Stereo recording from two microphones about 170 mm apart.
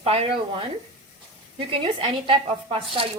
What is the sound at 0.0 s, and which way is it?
A woman's voice, 35° right (ahead or behind).